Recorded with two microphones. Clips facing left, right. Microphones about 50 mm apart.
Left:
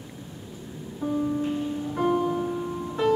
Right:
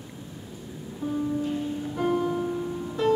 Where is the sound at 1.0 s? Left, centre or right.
Left.